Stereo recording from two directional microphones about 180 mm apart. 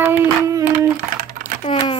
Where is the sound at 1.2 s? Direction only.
50° right (ahead or behind).